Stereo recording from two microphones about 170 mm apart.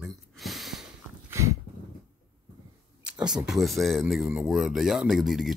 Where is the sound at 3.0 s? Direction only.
5° right (ahead or behind).